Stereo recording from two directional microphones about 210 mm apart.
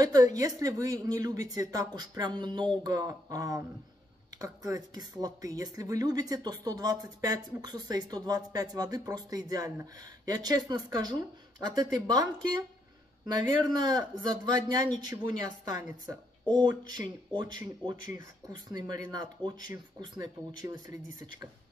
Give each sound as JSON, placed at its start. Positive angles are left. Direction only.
{"t": 0.0, "sound": "a man's voice", "side_deg": -15}
{"t": 13.3, "sound": "a man's voice", "side_deg": -20}